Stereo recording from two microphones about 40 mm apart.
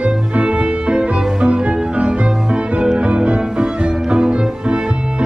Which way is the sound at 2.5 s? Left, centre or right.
Right.